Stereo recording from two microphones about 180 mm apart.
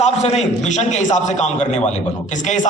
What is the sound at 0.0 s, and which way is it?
A man's voice, 40° left (ahead or behind).